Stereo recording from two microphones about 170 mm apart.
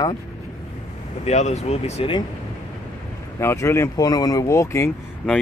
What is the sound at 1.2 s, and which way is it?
Speech, 40° left (ahead or behind).